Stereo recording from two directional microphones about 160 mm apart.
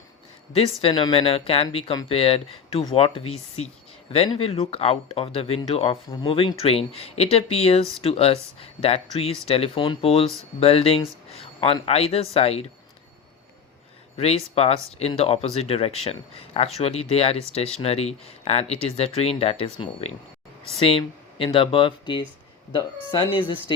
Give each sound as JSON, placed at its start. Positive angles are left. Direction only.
{"t": 0.5, "sound": "speech", "side_deg": 35}
{"t": 14.2, "sound": "speech", "side_deg": 40}
{"t": 23.3, "sound": "speech", "side_deg": 30}